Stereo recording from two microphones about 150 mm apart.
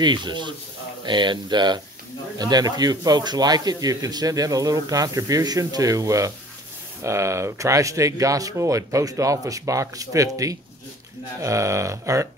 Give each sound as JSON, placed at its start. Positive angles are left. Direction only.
{"t": 0.0, "sound": "speech", "side_deg": -30}